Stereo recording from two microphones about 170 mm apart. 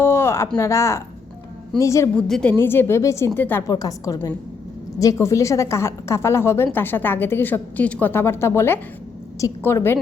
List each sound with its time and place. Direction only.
0.0 s a sound: 15° left (ahead or behind)
0.5 s a woman's voice: 20° left (ahead or behind)
2.1 s a woman's voice: 5° left (ahead or behind)